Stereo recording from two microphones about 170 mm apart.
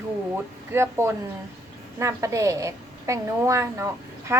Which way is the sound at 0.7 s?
15° right (ahead or behind).